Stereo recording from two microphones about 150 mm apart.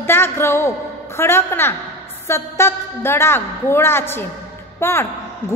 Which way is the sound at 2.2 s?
15° left (ahead or behind).